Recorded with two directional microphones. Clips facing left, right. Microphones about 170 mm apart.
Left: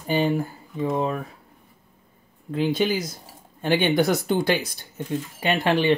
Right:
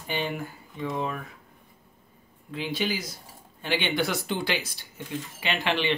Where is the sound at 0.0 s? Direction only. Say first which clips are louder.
Left 8 dB; 40° left (ahead or behind).